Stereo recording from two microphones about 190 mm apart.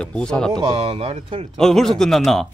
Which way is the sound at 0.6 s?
30° right (ahead or behind).